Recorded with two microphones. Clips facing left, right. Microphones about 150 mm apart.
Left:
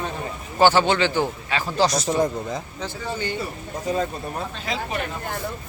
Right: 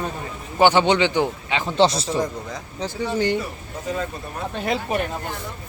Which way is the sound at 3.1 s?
80° right.